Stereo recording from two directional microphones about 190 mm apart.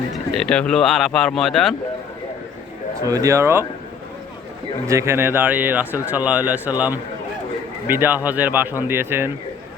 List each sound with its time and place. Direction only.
0.1 s speech: 5° left (ahead or behind)
3.1 s speech: 15° right (ahead or behind)
4.9 s speech: 15° right (ahead or behind)